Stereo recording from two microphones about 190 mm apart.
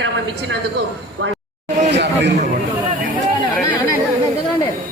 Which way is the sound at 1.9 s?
65° right (ahead or behind).